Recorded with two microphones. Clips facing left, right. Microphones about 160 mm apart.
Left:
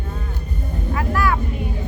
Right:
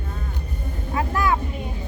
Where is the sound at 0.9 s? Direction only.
20° right (ahead or behind).